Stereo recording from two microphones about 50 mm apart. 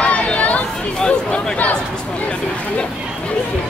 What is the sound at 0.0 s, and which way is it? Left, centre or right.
Chatter, left.